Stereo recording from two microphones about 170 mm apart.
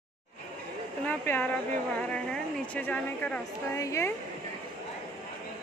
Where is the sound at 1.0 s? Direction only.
10° left (ahead or behind).